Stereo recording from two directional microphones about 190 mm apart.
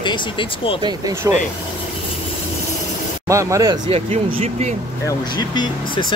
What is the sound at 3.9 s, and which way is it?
Speech, 30° right (ahead or behind).